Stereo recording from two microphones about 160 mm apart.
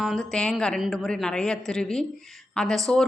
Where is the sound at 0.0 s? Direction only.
Centre (ahead or behind).